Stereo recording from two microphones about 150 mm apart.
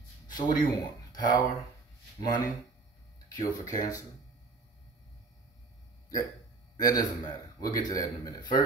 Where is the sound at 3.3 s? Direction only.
25° left (ahead or behind).